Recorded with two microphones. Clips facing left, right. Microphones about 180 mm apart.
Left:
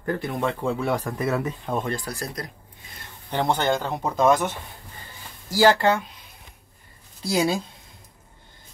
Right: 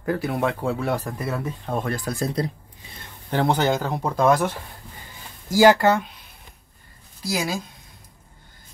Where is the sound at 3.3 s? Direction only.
5° right (ahead or behind).